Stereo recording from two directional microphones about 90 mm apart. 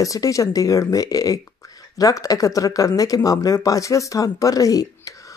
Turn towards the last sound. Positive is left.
turn(degrees=40)  # may be behind; listen again after turning